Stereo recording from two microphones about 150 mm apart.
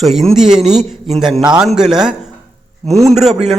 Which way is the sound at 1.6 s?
5° right (ahead or behind).